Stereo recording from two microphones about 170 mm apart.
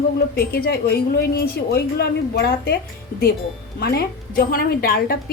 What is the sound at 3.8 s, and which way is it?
A woman's voice, 65° left (ahead or behind).